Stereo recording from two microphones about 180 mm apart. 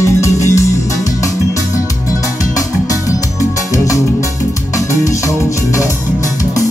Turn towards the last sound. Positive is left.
turn(degrees=15)  # may be behind; listen again after turning